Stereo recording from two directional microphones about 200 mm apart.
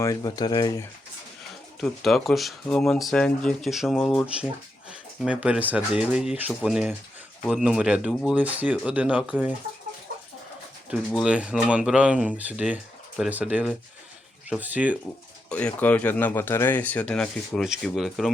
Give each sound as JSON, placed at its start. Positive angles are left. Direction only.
{"t": 0.0, "sound": "speech", "side_deg": 20}
{"t": 1.8, "sound": "speech", "side_deg": 0}
{"t": 10.8, "sound": "speech", "side_deg": 0}
{"t": 15.4, "sound": "speech", "side_deg": 5}